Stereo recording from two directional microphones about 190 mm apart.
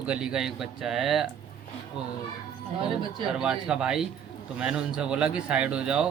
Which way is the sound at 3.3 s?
5° right (ahead or behind).